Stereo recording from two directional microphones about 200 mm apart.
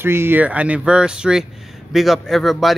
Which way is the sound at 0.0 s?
10° right (ahead or behind).